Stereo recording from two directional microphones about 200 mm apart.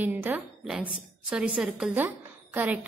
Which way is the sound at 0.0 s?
10° right (ahead or behind).